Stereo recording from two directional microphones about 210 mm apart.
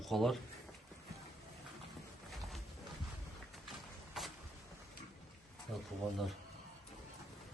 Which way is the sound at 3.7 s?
Centre (ahead or behind).